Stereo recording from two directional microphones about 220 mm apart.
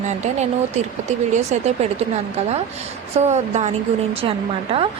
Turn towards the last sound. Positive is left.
turn(degrees=-25)  # may be behind; listen again after turning